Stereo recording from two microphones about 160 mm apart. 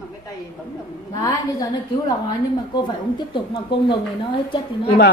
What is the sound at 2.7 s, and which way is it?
Speech, 25° left (ahead or behind).